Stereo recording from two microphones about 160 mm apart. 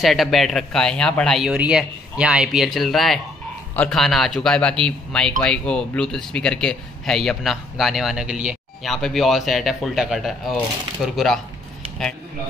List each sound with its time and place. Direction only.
0.0 s a man's voice: centre (ahead or behind)
1.5 s a man's voice: 5° right (ahead or behind)